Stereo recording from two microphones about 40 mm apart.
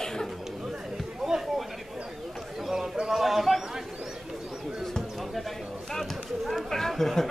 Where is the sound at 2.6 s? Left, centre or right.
Centre.